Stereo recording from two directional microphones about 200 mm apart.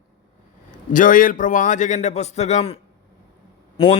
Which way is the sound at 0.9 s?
45° left (ahead or behind).